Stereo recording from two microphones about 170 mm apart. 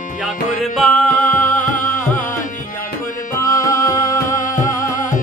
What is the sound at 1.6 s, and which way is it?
Music, 50° left (ahead or behind).